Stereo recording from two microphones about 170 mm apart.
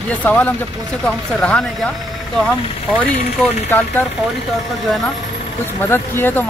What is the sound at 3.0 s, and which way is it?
Speech, 10° left (ahead or behind).